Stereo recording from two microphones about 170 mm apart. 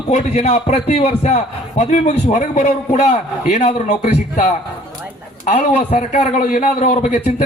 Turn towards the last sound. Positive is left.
turn(degrees=45)  # may be behind; listen again after turning